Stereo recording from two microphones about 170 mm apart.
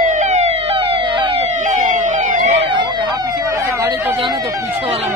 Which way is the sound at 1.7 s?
50° right (ahead or behind).